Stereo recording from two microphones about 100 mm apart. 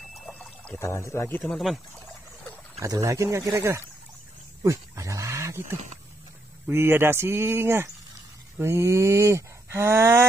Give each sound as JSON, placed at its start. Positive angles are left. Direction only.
{"t": 0.1, "sound": "pour", "side_deg": 0}
{"t": 0.7, "sound": "speech", "side_deg": 30}
{"t": 1.4, "sound": "speech", "side_deg": 0}
{"t": 2.8, "sound": "speech", "side_deg": -30}
{"t": 4.6, "sound": "goat", "side_deg": -30}
{"t": 6.7, "sound": "speech", "side_deg": -25}